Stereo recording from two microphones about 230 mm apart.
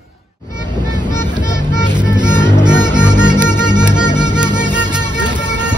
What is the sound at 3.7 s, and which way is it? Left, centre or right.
Music, centre.